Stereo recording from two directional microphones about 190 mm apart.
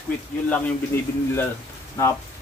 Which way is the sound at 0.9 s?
10° left (ahead or behind).